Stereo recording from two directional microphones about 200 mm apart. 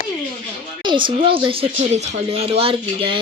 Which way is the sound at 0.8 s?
25° right (ahead or behind).